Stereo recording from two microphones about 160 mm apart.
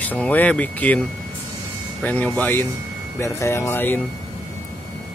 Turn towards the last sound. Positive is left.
turn(degrees=15)  # may be behind; listen again after turning